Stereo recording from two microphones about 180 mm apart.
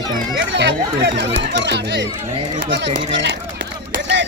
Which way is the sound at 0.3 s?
80° right.